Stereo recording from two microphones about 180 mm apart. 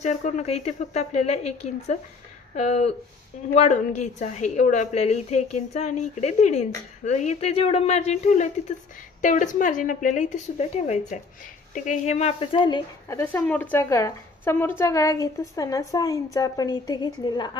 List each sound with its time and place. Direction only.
0.0 s a woman's voice: 40° left (ahead or behind)
13.2 s a woman's voice: 10° left (ahead or behind)